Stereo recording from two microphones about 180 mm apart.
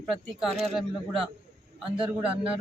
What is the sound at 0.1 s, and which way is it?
Speech, centre (ahead or behind).